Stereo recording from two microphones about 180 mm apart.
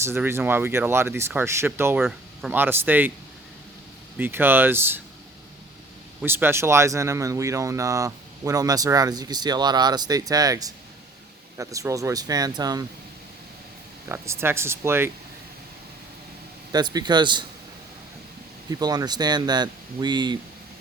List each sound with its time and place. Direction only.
0.0 s speech: 15° right (ahead or behind)
4.2 s speech: 10° right (ahead or behind)
6.2 s speech: 10° right (ahead or behind)
14.1 s speech: 15° right (ahead or behind)
16.7 s speech: 25° right (ahead or behind)
18.7 s speech: 20° right (ahead or behind)